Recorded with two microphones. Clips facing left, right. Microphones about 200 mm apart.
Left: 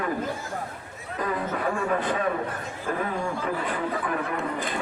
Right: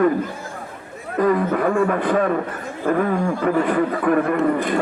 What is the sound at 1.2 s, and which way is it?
A man's voice, 55° right (ahead or behind).